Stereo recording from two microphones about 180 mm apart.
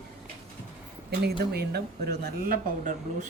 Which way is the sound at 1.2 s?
60° right (ahead or behind).